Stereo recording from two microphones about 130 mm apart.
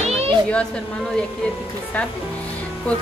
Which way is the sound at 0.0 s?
50° right (ahead or behind).